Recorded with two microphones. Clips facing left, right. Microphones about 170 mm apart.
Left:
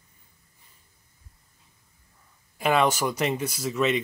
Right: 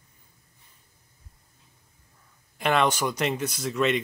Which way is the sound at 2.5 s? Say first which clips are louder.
Left 1 dB; 5° left (ahead or behind).